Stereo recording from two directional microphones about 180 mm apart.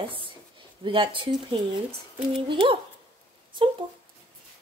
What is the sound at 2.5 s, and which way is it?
A woman's voice, 30° right (ahead or behind).